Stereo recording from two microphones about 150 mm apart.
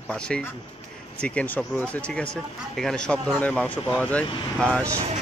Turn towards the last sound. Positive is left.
turn(degrees=10)  # may be behind; listen again after turning